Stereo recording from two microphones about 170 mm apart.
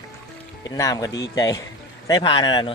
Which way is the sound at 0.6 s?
20° left (ahead or behind).